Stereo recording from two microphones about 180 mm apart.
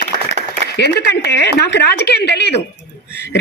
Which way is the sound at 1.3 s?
70° left (ahead or behind).